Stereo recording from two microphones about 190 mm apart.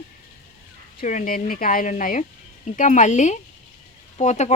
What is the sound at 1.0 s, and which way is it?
A woman's voice, 40° left (ahead or behind).